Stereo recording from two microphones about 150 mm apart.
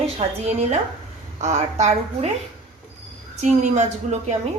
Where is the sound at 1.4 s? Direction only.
50° right (ahead or behind).